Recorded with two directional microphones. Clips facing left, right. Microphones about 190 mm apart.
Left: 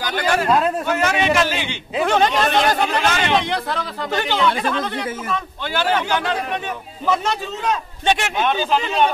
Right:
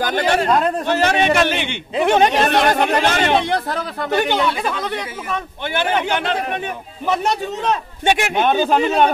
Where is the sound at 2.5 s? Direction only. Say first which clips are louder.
Right 2 dB; 60° right (ahead or behind).